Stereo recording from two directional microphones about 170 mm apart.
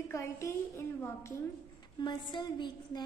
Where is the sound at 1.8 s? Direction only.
25° left (ahead or behind).